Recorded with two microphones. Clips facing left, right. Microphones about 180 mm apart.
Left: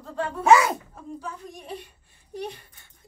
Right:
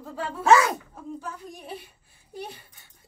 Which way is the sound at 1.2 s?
5° right (ahead or behind).